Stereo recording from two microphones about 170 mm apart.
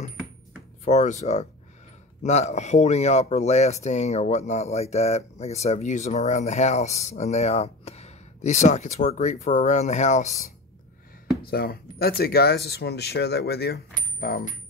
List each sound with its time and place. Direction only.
0.8 s speech: 45° left (ahead or behind)
11.4 s speech: 65° left (ahead or behind)
14.2 s coin: 60° left (ahead or behind)